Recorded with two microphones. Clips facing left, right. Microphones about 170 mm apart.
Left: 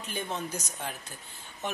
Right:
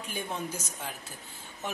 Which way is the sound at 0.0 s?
10° right (ahead or behind).